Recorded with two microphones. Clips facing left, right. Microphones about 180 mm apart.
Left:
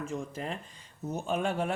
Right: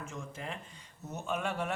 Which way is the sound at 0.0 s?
35° left (ahead or behind).